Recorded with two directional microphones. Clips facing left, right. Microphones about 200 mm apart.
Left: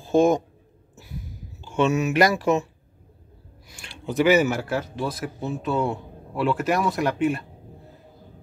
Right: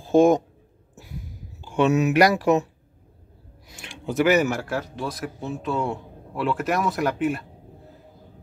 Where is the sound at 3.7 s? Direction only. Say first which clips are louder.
Right 1 dB; 15° right (ahead or behind).